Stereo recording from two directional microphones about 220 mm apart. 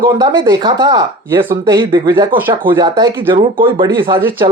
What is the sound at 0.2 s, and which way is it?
Speech, 20° right (ahead or behind).